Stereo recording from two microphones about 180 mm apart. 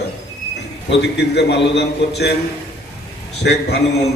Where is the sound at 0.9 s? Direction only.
70° left (ahead or behind).